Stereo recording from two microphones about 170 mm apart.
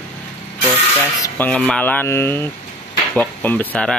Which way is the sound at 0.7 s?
20° left (ahead or behind).